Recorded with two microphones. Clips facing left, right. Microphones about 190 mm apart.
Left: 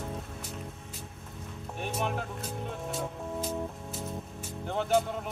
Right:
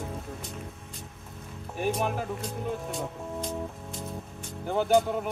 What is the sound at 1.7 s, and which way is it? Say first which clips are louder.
Speech: right 5 dB; 5° right (ahead or behind).